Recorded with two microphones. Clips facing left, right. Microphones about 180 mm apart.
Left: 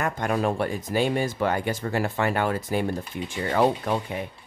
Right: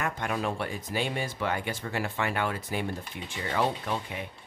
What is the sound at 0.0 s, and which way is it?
Speech, 45° left (ahead or behind).